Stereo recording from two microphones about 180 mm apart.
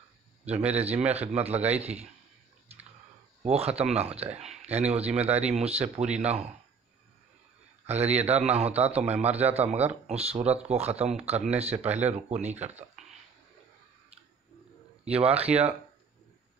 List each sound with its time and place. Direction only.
0.5 s speech: 35° right (ahead or behind)
3.4 s speech: 35° right (ahead or behind)
7.8 s a sound: 35° right (ahead or behind)
8.2 s speech: 35° right (ahead or behind)
15.0 s speech: 35° right (ahead or behind)